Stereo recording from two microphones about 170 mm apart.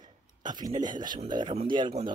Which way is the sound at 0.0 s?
25° right (ahead or behind).